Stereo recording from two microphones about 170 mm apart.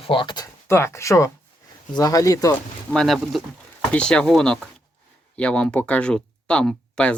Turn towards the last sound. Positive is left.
turn(degrees=5)  # may be behind; listen again after turning